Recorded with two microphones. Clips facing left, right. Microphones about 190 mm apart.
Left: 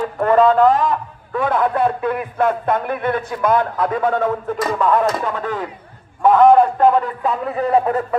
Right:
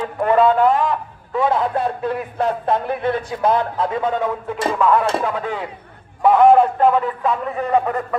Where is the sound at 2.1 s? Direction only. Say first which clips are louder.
Left 2 dB; 55° left (ahead or behind).